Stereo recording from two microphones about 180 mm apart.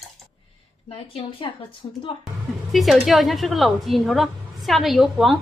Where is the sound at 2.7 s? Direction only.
Centre (ahead or behind).